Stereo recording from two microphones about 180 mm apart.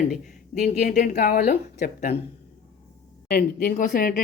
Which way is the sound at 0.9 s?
55° left (ahead or behind).